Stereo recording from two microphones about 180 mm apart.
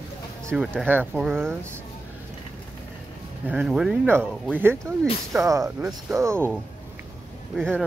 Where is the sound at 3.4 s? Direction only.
5° right (ahead or behind).